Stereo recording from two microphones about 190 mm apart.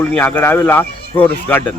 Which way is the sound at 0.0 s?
10° left (ahead or behind).